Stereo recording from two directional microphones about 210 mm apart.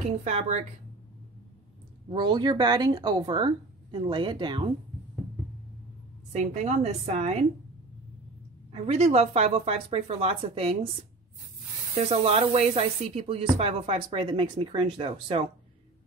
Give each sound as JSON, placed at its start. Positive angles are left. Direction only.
{"t": 0.2, "sound": "a woman's voice", "side_deg": -30}
{"t": 2.1, "sound": "speech", "side_deg": -20}
{"t": 6.3, "sound": "a woman's voice", "side_deg": -35}
{"t": 8.8, "sound": "speech", "side_deg": -30}
{"t": 11.9, "sound": "speech", "side_deg": -25}